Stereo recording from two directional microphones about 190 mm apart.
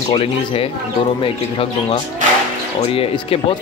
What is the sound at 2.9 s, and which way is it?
Speech, 30° left (ahead or behind).